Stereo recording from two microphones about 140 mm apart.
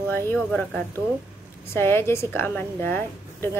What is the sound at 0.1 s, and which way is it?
A woman's voice, 15° left (ahead or behind).